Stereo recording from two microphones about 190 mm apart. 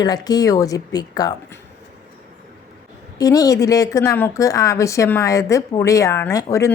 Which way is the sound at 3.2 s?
20° left (ahead or behind).